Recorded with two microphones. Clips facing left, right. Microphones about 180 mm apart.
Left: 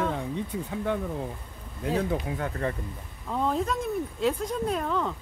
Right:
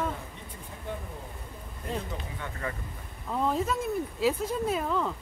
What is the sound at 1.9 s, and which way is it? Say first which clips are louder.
Speech: left 10 dB; 70° left (ahead or behind).